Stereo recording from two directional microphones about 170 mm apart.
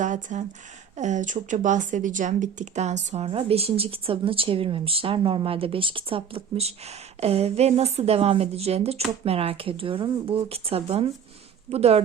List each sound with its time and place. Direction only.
0.0 s speech: 45° right (ahead or behind)